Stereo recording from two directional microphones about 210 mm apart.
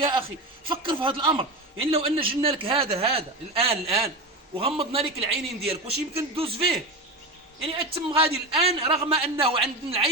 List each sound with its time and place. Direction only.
0.0 s a man's voice: 25° right (ahead or behind)